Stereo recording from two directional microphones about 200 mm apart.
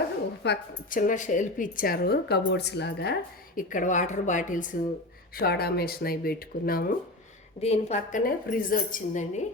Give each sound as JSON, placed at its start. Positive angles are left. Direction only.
{"t": 0.4, "sound": "a woman's voice", "side_deg": 60}
{"t": 0.9, "sound": "a woman's voice", "side_deg": 40}
{"t": 5.4, "sound": "speech", "side_deg": 50}
{"t": 7.6, "sound": "a woman's voice", "side_deg": 30}